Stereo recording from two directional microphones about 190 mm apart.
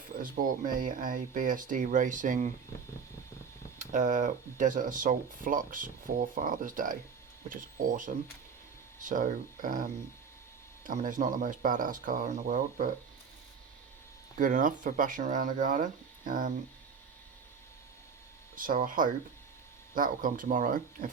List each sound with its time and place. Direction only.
0.2 s speech: 45° right (ahead or behind)
3.8 s speech: 40° right (ahead or behind)
10.8 s speech: 45° right (ahead or behind)
14.3 s speech: 45° right (ahead or behind)
18.5 s speech: 45° right (ahead or behind)